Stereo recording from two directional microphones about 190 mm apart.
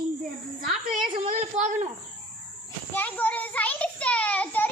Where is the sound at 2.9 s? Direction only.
10° left (ahead or behind).